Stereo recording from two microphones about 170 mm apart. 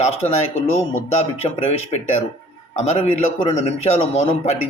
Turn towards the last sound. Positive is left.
turn(degrees=40)  # may be behind; listen again after turning